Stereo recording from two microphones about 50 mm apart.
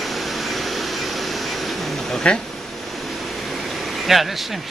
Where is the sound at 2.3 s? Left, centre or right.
Centre.